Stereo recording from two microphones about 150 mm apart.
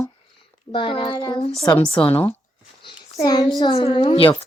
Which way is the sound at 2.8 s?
30° left (ahead or behind).